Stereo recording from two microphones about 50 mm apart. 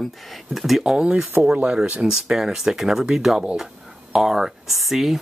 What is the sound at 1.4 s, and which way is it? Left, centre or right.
Speech, right.